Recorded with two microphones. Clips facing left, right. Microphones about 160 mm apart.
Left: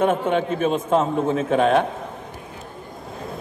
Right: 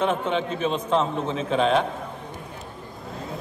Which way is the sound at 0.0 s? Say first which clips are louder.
Left 4 dB; 50° left (ahead or behind).